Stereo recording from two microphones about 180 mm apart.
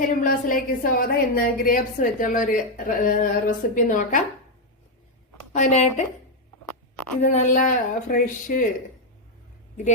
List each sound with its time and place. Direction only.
0.2 s a woman's voice: 50° left (ahead or behind)
5.5 s speech: 40° left (ahead or behind)
7.2 s a woman's voice: 45° left (ahead or behind)